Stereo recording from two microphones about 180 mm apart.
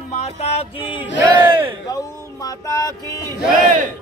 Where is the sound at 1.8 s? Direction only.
20° left (ahead or behind).